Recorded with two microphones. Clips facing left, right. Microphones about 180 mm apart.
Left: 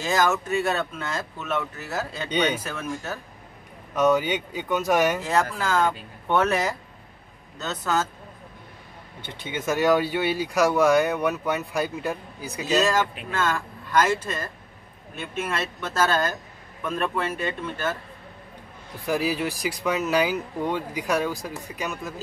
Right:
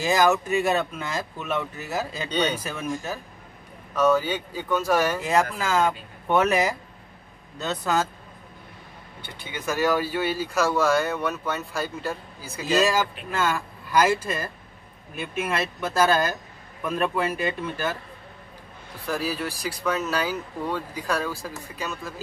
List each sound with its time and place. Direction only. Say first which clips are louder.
0.0 s speech: right 2 dB; 10° right (ahead or behind)
3.9 s speech: even; 15° left (ahead or behind)
5.2 s speech: right 1 dB; 10° right (ahead or behind)
7.8 s speech: even; 10° right (ahead or behind)
9.2 s speech: left 3 dB; 25° left (ahead or behind)
12.7 s speech: even; 10° right (ahead or behind)
19.0 s speech: left 3 dB; 15° left (ahead or behind)